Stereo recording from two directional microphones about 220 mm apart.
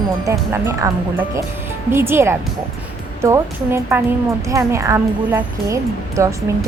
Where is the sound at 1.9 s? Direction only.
10° right (ahead or behind).